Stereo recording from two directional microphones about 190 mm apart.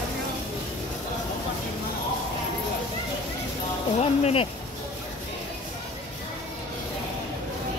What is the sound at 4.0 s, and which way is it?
Speech, 35° left (ahead or behind).